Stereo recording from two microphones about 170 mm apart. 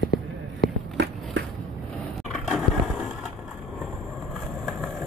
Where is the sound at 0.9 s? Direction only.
90° right.